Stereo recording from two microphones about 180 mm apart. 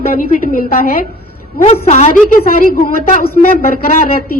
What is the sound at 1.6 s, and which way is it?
Speech, 35° left (ahead or behind).